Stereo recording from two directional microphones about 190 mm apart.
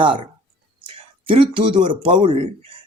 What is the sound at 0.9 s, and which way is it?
Speech, 30° right (ahead or behind).